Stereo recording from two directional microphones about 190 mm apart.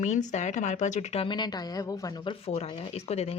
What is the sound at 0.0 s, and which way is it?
A woman's voice, 40° left (ahead or behind).